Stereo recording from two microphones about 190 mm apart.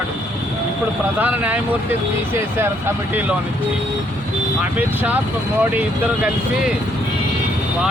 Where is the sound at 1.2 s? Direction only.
10° right (ahead or behind).